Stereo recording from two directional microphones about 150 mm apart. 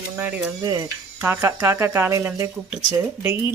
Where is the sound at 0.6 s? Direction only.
25° right (ahead or behind).